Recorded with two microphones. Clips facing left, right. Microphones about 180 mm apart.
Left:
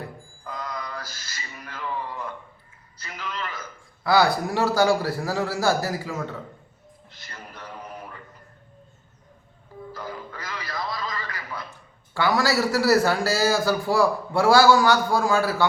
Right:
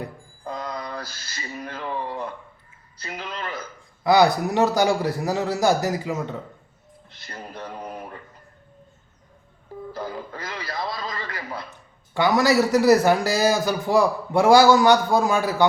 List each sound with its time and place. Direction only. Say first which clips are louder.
0.0 s music: right 4 dB; 30° right (ahead or behind)
3.0 s a sound: right 1 dB; 30° right (ahead or behind)
4.0 s a man's voice: right 3 dB; 20° right (ahead or behind)
7.3 s music: right 6 dB; 30° right (ahead or behind)
9.9 s a sound: right 4 dB; 30° right (ahead or behind)
12.1 s a man's voice: right 4 dB; 20° right (ahead or behind)